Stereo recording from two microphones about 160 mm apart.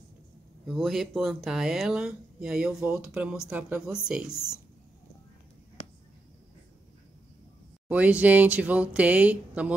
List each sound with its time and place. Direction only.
0.7 s speech: centre (ahead or behind)
7.9 s speech: 10° right (ahead or behind)